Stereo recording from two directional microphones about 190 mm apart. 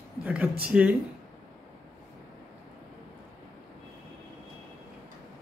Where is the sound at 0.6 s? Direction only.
5° right (ahead or behind).